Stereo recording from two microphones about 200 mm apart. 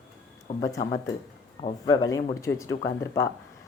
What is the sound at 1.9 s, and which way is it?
Speech, 20° left (ahead or behind).